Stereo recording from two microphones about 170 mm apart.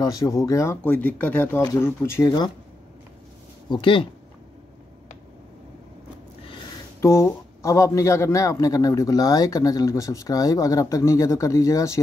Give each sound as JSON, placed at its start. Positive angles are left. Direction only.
{"t": 0.0, "sound": "a man's voice", "side_deg": 20}
{"t": 3.6, "sound": "speech", "side_deg": 30}
{"t": 7.0, "sound": "a man's voice", "side_deg": 15}